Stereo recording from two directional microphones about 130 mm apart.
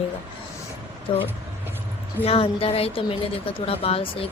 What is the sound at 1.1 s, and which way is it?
Speech, 40° left (ahead or behind).